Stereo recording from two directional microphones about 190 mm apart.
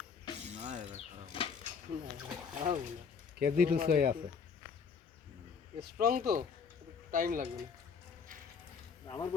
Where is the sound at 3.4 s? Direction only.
50° right (ahead or behind).